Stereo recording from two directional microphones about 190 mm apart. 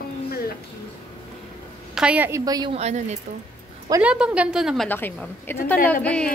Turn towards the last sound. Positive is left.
turn(degrees=5)  # may be behind; listen again after turning